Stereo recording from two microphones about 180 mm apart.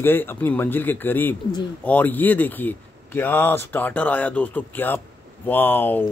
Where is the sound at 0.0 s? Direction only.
10° left (ahead or behind).